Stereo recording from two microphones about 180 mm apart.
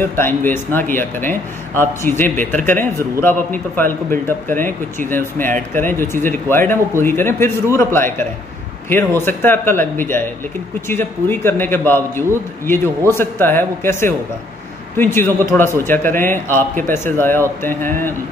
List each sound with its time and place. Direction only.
0.0 s a man's voice: 10° left (ahead or behind)
2.2 s speech: 45° right (ahead or behind)
2.7 s a man's voice: 15° left (ahead or behind)